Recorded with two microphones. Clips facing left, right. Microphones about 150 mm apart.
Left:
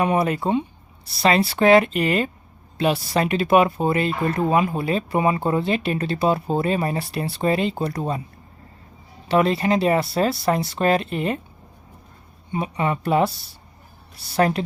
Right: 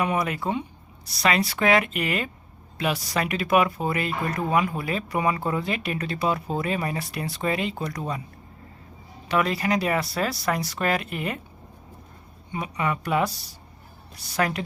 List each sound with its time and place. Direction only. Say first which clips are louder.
0.0 s a woman's voice: left 5 dB; 30° left (ahead or behind)
9.3 s speech: left 5 dB; 30° left (ahead or behind)
12.5 s speech: left 4 dB; 30° left (ahead or behind)